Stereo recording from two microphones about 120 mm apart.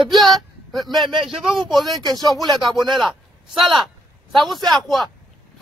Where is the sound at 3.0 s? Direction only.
Centre (ahead or behind).